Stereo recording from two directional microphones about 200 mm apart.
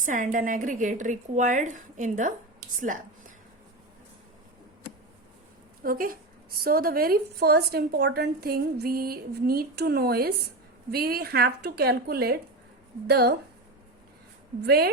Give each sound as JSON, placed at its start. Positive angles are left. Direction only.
{"t": 0.0, "sound": "a woman's voice", "side_deg": -40}
{"t": 5.8, "sound": "a woman's voice", "side_deg": -45}
{"t": 14.6, "sound": "a woman's voice", "side_deg": -50}